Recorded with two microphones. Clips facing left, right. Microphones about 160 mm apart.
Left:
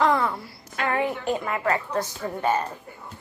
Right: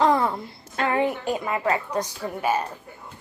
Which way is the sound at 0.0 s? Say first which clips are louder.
Right 2 dB; 25° right (ahead or behind).